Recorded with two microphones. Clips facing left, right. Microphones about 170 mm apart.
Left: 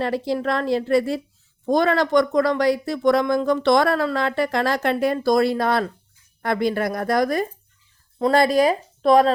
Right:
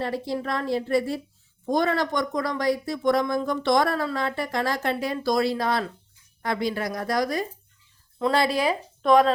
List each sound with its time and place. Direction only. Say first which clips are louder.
0.0 s a woman's voice: left 5 dB; 90° left; by 9.3 s 35° left (ahead or behind)